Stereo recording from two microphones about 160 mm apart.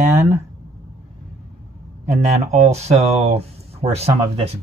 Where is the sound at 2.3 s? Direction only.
45° right (ahead or behind).